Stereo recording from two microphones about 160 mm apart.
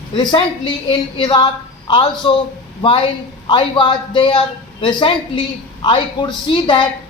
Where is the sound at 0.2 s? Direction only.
30° left (ahead or behind).